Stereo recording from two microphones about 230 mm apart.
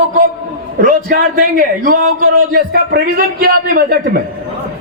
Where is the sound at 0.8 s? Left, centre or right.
Right.